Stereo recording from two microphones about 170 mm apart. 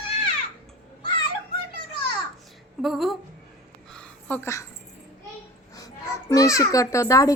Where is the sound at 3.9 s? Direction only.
5° left (ahead or behind).